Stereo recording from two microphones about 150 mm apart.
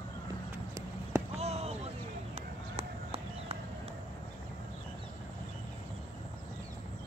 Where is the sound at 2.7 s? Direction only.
40° right (ahead or behind).